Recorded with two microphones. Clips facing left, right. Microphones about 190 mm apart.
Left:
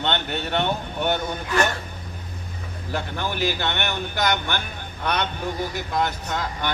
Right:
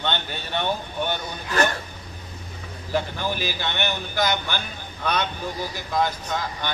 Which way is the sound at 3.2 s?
65° left (ahead or behind).